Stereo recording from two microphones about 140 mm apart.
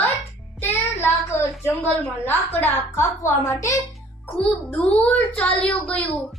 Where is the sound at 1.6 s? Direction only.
15° left (ahead or behind).